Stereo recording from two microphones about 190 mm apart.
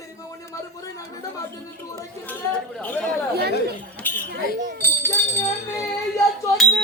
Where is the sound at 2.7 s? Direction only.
10° left (ahead or behind).